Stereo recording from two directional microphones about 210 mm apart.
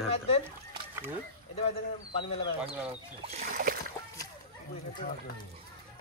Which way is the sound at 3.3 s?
40° right (ahead or behind).